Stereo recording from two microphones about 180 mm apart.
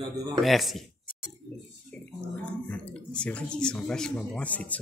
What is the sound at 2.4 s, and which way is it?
Speech, 5° left (ahead or behind).